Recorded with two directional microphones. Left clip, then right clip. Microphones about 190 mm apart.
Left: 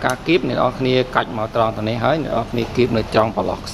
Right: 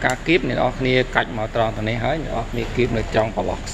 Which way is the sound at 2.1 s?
15° left (ahead or behind).